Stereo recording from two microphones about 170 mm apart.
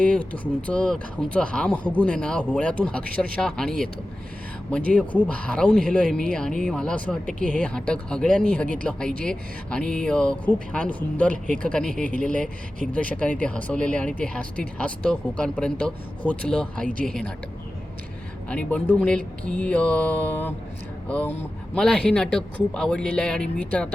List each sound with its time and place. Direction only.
0.0 s speech: 5° left (ahead or behind)
4.9 s speech: 10° left (ahead or behind)
7.3 s speech: 50° right (ahead or behind)
7.6 s speech: 5° left (ahead or behind)
18.4 s speech: 10° left (ahead or behind)